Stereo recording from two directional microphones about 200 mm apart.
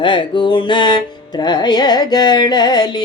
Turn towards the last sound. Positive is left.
turn(degrees=20)  # may be behind; listen again after turning